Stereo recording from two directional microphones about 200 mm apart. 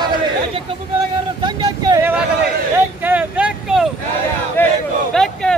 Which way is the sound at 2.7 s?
10° right (ahead or behind).